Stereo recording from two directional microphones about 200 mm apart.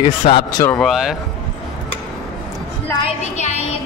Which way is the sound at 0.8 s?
Centre (ahead or behind).